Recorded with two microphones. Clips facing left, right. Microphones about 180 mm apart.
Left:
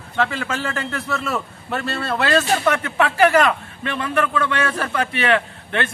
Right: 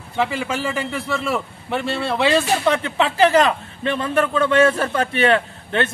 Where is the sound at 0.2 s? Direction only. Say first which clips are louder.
Right 1 dB; 15° right (ahead or behind).